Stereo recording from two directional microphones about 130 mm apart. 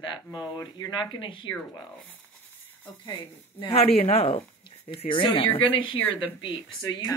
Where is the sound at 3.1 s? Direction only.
40° left (ahead or behind).